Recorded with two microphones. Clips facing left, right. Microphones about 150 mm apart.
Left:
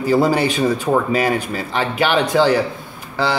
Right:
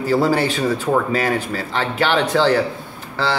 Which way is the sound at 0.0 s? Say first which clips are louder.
Left 2 dB; 15° left (ahead or behind).